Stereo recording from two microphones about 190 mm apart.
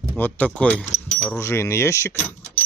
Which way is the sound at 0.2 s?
5° left (ahead or behind).